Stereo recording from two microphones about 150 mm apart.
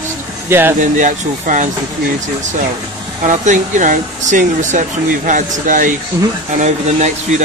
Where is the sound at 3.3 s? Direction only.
55° right (ahead or behind).